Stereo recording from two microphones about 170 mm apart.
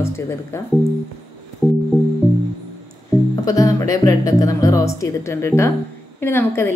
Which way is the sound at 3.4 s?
20° left (ahead or behind).